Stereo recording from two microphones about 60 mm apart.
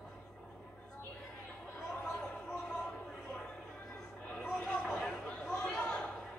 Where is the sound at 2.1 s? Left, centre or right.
Centre.